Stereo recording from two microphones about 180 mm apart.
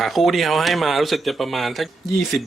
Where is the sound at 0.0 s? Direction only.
Centre (ahead or behind).